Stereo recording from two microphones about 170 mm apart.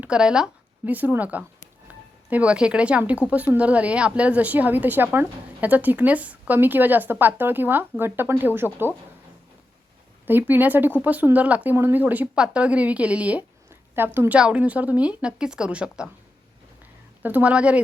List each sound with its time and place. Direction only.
0.0 s speech: 5° right (ahead or behind)
10.2 s speech: 10° right (ahead or behind)
17.2 s speech: 10° right (ahead or behind)